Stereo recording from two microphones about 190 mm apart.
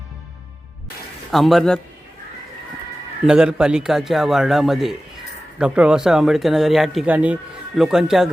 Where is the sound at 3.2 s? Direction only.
5° right (ahead or behind).